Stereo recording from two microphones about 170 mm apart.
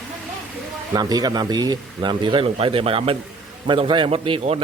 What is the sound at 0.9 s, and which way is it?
A man's voice, 20° right (ahead or behind).